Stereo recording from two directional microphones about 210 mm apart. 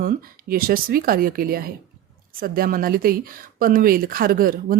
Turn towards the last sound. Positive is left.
turn(degrees=-45)  # may be behind; listen again after turning